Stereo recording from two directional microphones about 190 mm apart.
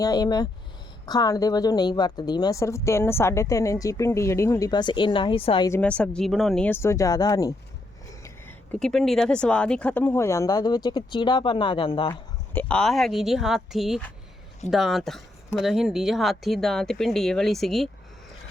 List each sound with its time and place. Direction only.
0.0 s a woman's voice: 20° left (ahead or behind)
5.7 s speech: 5° left (ahead or behind)
6.7 s speech: 15° left (ahead or behind)
12.5 s speech: 5° left (ahead or behind)